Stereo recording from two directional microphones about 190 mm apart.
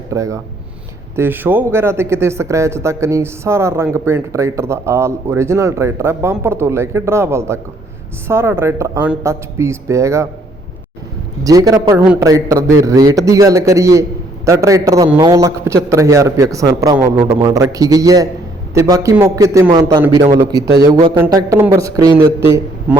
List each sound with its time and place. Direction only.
0.1 s a man's voice: 15° right (ahead or behind)
11.4 s a man's voice: 20° right (ahead or behind)